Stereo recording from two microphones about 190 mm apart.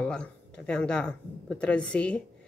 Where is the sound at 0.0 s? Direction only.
5° left (ahead or behind).